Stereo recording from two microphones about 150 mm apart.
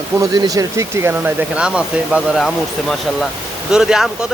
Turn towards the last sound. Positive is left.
turn(degrees=-5)  # may be behind; listen again after turning